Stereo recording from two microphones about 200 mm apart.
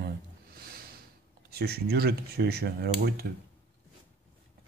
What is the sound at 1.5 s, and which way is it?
Speech, 50° right (ahead or behind).